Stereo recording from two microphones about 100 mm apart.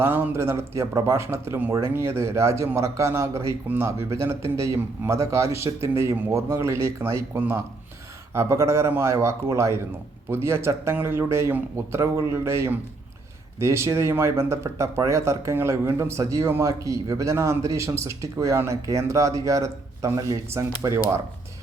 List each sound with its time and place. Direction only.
0.0 s a man's voice: 20° right (ahead or behind)